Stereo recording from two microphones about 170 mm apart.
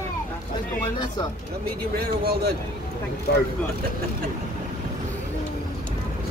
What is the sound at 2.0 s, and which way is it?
Speech, 65° right (ahead or behind).